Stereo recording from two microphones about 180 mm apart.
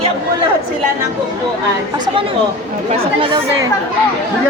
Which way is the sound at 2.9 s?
30° right (ahead or behind).